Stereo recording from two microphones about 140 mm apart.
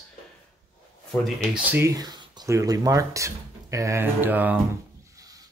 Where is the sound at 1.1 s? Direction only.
5° left (ahead or behind).